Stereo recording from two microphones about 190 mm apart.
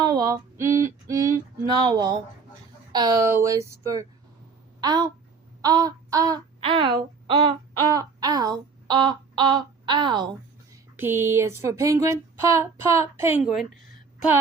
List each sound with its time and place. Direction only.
0.0 s a sound: 20° right (ahead or behind)
1.0 s speech: 15° right (ahead or behind)
10.9 s speech: 10° right (ahead or behind)